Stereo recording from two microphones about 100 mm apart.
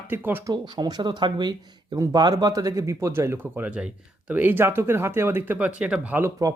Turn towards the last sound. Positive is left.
turn(degrees=-15)  # may be behind; listen again after turning